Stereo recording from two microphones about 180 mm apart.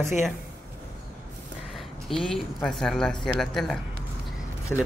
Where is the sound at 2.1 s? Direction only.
Centre (ahead or behind).